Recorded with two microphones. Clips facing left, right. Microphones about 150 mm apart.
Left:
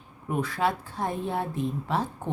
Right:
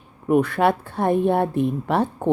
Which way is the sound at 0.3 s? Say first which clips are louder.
Right 9 dB; 60° right (ahead or behind).